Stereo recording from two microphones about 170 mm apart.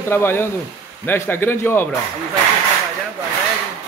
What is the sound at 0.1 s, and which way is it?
A man's voice, 15° left (ahead or behind).